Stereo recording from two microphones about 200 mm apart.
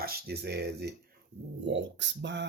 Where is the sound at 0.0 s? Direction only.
55° right (ahead or behind).